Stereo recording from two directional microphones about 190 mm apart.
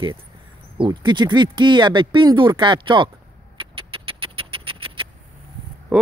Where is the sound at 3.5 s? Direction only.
25° right (ahead or behind).